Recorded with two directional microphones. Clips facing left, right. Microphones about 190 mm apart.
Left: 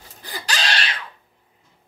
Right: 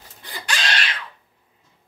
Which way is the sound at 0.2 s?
35° left (ahead or behind).